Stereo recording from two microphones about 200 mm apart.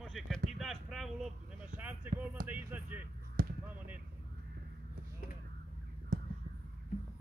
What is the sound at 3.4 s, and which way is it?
Basketball bounce, 45° right (ahead or behind).